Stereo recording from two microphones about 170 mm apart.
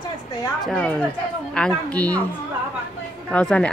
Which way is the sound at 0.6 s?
5° left (ahead or behind).